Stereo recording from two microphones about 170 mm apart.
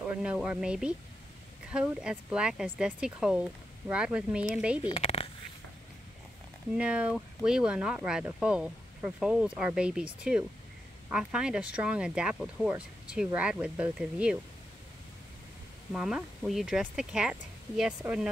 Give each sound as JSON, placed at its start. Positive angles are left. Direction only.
{"t": 0.0, "sound": "speech", "side_deg": -5}
{"t": 4.8, "sound": "speech", "side_deg": 35}
{"t": 6.7, "sound": "speech", "side_deg": -5}
{"t": 15.9, "sound": "speech", "side_deg": -5}